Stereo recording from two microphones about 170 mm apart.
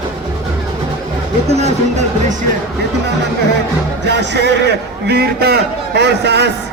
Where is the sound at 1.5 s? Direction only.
40° right (ahead or behind).